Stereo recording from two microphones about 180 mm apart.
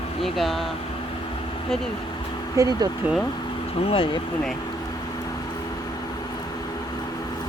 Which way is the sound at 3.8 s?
30° left (ahead or behind).